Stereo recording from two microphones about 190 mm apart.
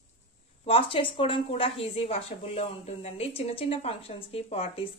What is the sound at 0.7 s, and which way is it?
A woman's voice, 30° left (ahead or behind).